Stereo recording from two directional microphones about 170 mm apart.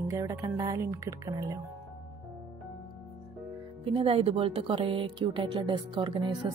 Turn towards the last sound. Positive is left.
turn(degrees=-30)  # may be behind; listen again after turning